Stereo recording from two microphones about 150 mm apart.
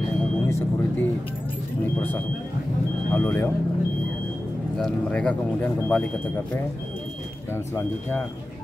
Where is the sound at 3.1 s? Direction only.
10° left (ahead or behind).